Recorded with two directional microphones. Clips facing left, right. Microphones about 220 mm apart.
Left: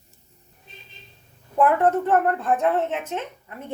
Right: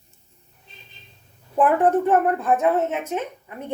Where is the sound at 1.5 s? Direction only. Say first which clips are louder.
Right 1 dB; 15° right (ahead or behind).